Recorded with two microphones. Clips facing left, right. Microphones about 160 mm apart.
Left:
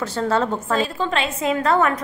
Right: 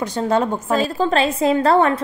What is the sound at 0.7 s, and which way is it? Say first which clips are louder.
A woman's voice: right 6 dB; 40° right (ahead or behind).